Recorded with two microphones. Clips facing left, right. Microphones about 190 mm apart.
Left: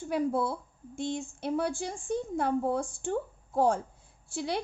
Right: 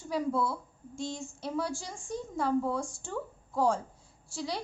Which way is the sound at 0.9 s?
55° left (ahead or behind).